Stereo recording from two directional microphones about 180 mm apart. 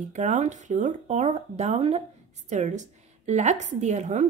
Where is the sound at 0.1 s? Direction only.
40° right (ahead or behind).